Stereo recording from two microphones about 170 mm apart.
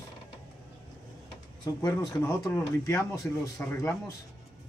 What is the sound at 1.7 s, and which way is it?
Speech, 20° left (ahead or behind).